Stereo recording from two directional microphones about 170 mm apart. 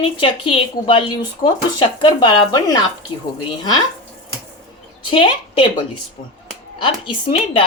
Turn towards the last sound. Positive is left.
turn(degrees=30)  # may be behind; listen again after turning